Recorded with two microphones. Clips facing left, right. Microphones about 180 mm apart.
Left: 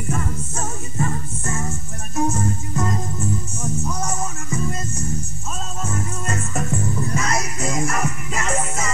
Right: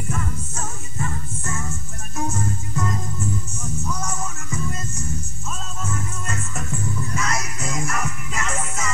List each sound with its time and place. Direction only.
0.1 s music: 35° left (ahead or behind)
5.8 s music: 35° left (ahead or behind)